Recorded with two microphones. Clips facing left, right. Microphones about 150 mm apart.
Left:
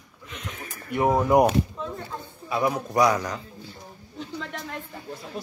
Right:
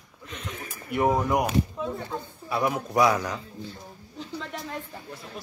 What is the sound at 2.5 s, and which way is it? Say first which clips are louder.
A man's voice: left 1 dB; centre (ahead or behind).